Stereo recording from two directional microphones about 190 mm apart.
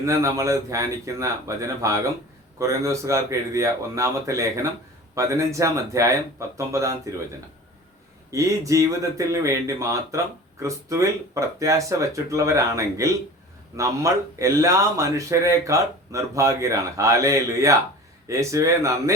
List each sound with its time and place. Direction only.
0.0 s speech: 15° right (ahead or behind)
8.3 s speech: 15° right (ahead or behind)